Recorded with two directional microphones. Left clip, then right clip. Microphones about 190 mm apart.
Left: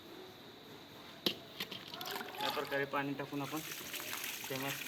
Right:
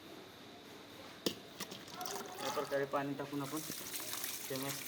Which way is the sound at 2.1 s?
20° right (ahead or behind).